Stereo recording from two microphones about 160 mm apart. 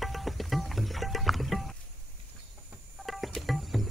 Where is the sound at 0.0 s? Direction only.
Centre (ahead or behind).